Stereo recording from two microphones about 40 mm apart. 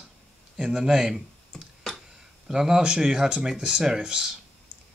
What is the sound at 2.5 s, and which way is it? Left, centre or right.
Speech, centre.